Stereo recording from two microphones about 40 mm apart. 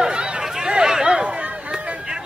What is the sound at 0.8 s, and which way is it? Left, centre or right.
Chatter, centre.